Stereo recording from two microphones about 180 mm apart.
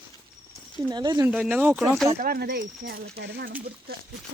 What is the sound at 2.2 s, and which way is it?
Speech, 55° right (ahead or behind).